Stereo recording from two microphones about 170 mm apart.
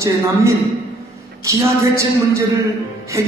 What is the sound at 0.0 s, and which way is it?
A man's voice, 15° right (ahead or behind).